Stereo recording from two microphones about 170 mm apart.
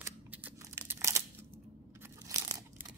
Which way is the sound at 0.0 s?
15° right (ahead or behind).